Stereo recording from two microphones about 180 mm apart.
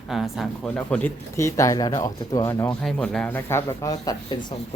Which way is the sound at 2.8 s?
5° left (ahead or behind).